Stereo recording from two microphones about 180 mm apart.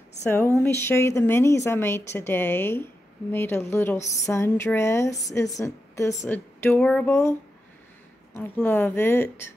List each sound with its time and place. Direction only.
0.2 s a woman's voice: 10° left (ahead or behind)
6.8 s a sound: 5° left (ahead or behind)
7.1 s a woman's voice: 15° left (ahead or behind)